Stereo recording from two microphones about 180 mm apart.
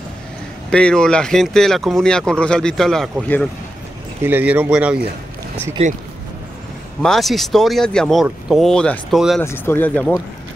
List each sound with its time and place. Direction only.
0.7 s speech: 5° left (ahead or behind)
4.2 s speech: 10° right (ahead or behind)
5.8 s speech: 35° right (ahead or behind)
7.0 s speech: centre (ahead or behind)
9.4 s speech: 15° left (ahead or behind)